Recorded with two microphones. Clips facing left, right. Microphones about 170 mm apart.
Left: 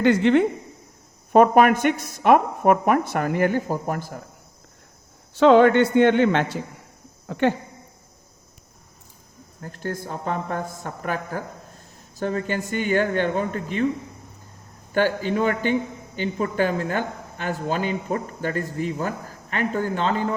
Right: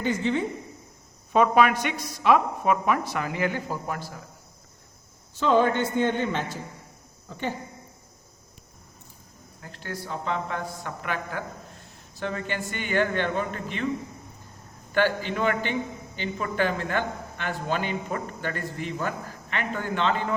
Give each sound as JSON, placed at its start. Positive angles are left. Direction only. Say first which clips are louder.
{"t": 0.0, "sound": "a woman's voice", "louder": "left 9 dB", "side_deg": 70}
{"t": 1.3, "sound": "speech", "louder": "left 5 dB", "side_deg": 50}
{"t": 5.3, "sound": "a woman's voice", "louder": "left 8 dB", "side_deg": 70}
{"t": 9.6, "sound": "speech", "louder": "left 6 dB", "side_deg": 45}
{"t": 14.9, "sound": "speech", "louder": "left 3 dB", "side_deg": 45}